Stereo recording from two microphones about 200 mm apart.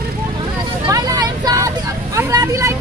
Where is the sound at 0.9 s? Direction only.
20° right (ahead or behind).